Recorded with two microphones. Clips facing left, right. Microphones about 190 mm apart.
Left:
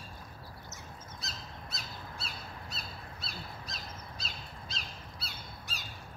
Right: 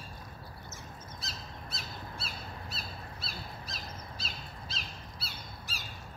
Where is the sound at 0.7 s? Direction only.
Centre (ahead or behind).